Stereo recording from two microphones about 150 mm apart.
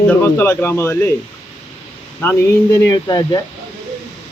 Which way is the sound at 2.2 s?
15° left (ahead or behind).